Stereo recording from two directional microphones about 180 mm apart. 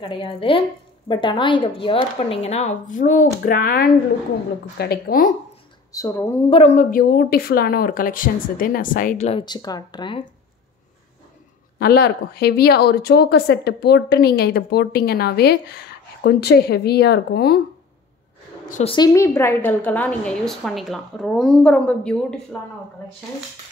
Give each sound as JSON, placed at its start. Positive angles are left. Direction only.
{"t": 0.0, "sound": "a woman's voice", "side_deg": 30}
{"t": 5.9, "sound": "a woman's voice", "side_deg": 15}
{"t": 6.5, "sound": "a woman's voice", "side_deg": 35}
{"t": 9.3, "sound": "speech", "side_deg": 25}
{"t": 11.8, "sound": "speech", "side_deg": 60}
{"t": 18.9, "sound": "a woman's voice", "side_deg": 20}